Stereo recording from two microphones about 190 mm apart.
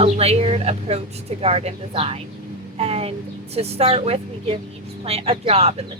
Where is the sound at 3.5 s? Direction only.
30° right (ahead or behind).